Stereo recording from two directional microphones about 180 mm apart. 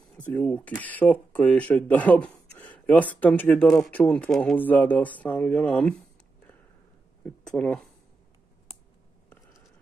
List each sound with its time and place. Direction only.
0.3 s speech: 10° left (ahead or behind)
7.2 s speech: 5° left (ahead or behind)
9.3 s a sound: 15° left (ahead or behind)